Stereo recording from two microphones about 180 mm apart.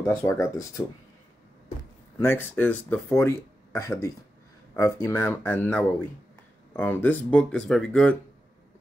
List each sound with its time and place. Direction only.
0.0 s speech: 15° left (ahead or behind)
2.1 s speech: 10° left (ahead or behind)